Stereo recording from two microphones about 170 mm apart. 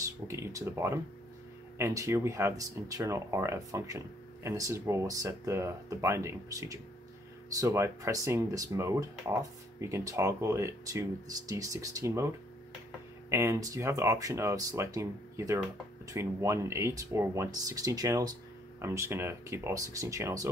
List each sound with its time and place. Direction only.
0.3 s speech: 20° right (ahead or behind)
13.3 s speech: 15° right (ahead or behind)